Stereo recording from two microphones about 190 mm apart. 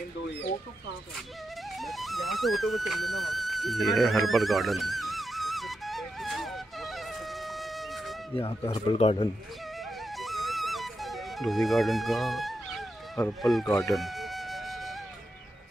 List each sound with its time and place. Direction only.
1.8 s music: centre (ahead or behind)
8.4 s speech: 25° left (ahead or behind)
10.1 s music: centre (ahead or behind)
13.4 s speech: centre (ahead or behind)
13.9 s music: centre (ahead or behind)